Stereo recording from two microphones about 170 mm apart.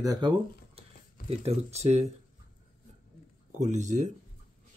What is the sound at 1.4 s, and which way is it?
Speech, 40° right (ahead or behind).